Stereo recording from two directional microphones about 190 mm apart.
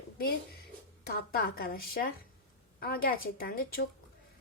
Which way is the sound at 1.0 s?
55° left (ahead or behind).